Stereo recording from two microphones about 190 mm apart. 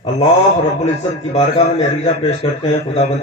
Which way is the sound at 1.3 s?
35° left (ahead or behind).